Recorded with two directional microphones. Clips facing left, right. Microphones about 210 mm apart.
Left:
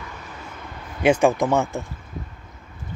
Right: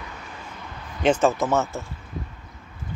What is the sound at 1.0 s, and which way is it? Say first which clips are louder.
Speech: left 2 dB; 10° left (ahead or behind).